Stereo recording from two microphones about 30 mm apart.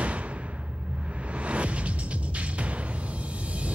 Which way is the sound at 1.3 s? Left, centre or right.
Right.